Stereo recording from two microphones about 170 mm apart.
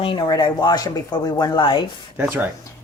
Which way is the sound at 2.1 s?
10° right (ahead or behind).